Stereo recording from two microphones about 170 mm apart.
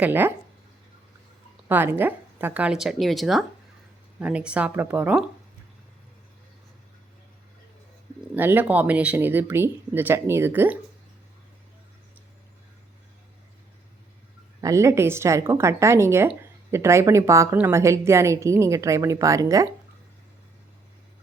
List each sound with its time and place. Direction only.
0.0 s speech: 10° right (ahead or behind)
1.6 s speech: 10° right (ahead or behind)
8.4 s speech: 10° right (ahead or behind)
14.6 s speech: 20° right (ahead or behind)